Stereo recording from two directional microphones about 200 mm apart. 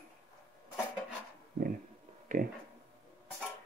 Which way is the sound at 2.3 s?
40° right (ahead or behind).